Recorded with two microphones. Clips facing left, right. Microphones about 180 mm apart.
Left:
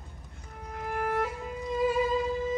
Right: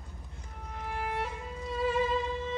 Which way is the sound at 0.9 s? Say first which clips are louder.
Left 5 dB; 50° left (ahead or behind).